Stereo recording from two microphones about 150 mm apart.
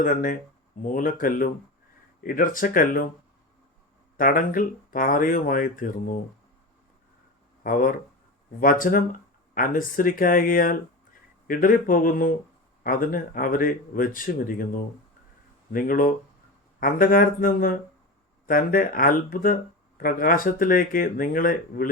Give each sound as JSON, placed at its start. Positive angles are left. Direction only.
{"t": 0.0, "sound": "speech", "side_deg": 65}
{"t": 4.2, "sound": "speech", "side_deg": 65}
{"t": 7.6, "sound": "speech", "side_deg": 65}